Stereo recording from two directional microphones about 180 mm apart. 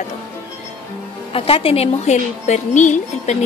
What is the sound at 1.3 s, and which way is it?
A woman's voice, 30° left (ahead or behind).